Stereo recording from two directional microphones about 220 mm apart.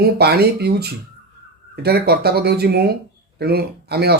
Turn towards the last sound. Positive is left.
turn(degrees=-45)  # may be behind; listen again after turning